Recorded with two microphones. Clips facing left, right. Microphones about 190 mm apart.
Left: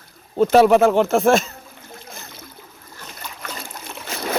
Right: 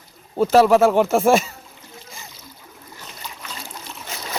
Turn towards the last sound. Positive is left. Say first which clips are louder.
# left 6 dB
turn(degrees=55)  # may be behind; listen again after turning